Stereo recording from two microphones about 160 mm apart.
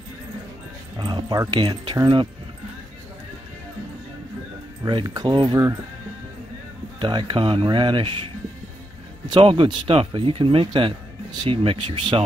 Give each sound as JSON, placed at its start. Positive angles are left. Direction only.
{"t": 0.9, "sound": "speech", "side_deg": -25}
{"t": 4.8, "sound": "speech", "side_deg": -25}
{"t": 7.0, "sound": "speech", "side_deg": -30}
{"t": 9.2, "sound": "speech", "side_deg": -30}